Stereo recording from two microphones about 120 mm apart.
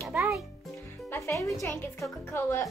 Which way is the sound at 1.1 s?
25° left (ahead or behind).